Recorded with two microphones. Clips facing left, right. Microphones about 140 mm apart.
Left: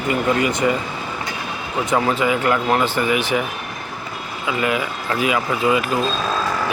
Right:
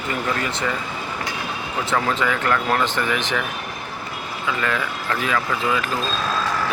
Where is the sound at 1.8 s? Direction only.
15° left (ahead or behind).